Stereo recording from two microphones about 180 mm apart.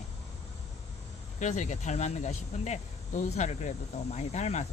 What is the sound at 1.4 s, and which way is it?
Speech, 40° left (ahead or behind).